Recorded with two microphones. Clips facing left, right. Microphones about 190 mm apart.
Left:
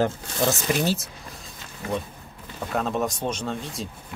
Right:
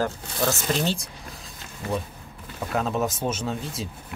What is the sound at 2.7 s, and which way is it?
Speech, centre (ahead or behind).